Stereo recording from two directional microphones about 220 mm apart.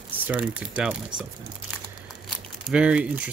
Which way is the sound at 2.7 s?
5° right (ahead or behind).